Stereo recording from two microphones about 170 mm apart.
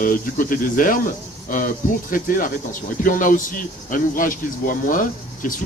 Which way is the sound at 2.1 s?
50° left (ahead or behind).